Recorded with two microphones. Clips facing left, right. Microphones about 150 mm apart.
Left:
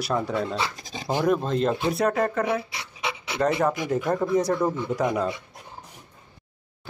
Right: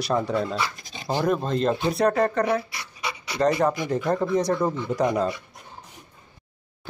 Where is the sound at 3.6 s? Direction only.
10° left (ahead or behind).